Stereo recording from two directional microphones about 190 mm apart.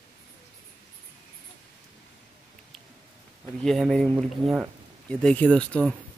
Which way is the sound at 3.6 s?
Centre (ahead or behind).